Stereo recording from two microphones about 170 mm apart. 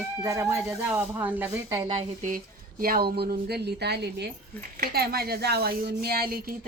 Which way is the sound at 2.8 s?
60° right (ahead or behind).